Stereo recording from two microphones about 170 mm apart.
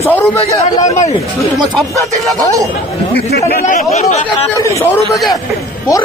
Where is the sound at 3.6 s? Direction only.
45° left (ahead or behind).